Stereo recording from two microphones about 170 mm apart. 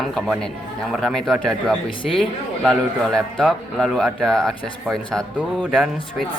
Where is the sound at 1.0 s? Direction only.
Centre (ahead or behind).